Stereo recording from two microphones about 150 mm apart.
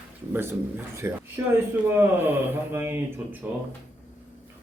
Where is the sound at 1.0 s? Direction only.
15° right (ahead or behind).